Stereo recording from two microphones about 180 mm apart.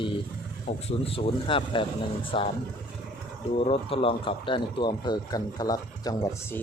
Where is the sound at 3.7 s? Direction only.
30° left (ahead or behind).